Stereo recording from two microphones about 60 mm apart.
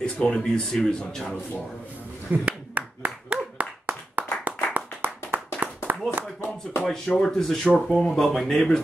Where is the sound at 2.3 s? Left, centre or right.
Right.